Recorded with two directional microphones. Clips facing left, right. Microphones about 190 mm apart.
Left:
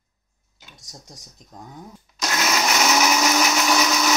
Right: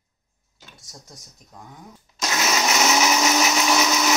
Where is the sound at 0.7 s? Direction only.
15° left (ahead or behind).